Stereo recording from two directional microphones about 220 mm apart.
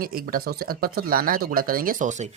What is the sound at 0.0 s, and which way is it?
Speech, 40° right (ahead or behind).